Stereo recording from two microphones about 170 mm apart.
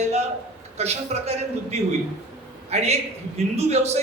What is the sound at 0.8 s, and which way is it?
Speech, 40° right (ahead or behind).